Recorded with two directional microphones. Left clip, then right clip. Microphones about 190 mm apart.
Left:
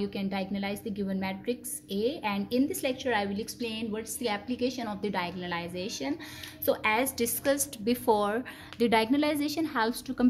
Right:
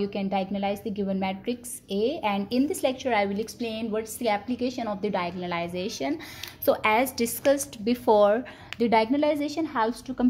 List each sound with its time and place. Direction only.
0.0 s a woman's voice: 25° right (ahead or behind); by 10.2 s 5° left (ahead or behind)